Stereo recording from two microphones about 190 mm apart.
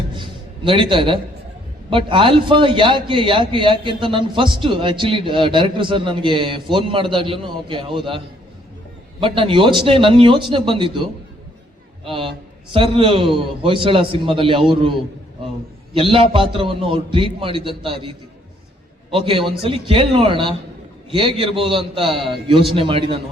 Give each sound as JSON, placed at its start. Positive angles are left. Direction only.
{"t": 0.2, "sound": "a sound", "side_deg": -25}
{"t": 1.9, "sound": "a man's voice", "side_deg": -25}
{"t": 9.2, "sound": "a man's voice", "side_deg": -25}
{"t": 12.0, "sound": "a man's voice", "side_deg": -30}
{"t": 16.0, "sound": "a man's voice", "side_deg": -30}
{"t": 19.1, "sound": "a man's voice", "side_deg": -30}